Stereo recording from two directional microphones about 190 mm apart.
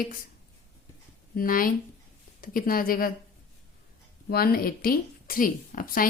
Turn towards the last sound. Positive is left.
turn(degrees=50)  # may be behind; listen again after turning